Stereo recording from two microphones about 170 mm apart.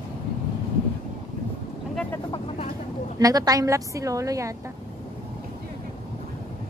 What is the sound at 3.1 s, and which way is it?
A woman's voice, 20° right (ahead or behind).